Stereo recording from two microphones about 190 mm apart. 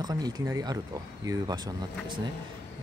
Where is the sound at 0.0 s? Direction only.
20° right (ahead or behind).